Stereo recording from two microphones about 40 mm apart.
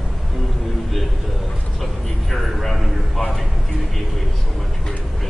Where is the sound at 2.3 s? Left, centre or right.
Centre.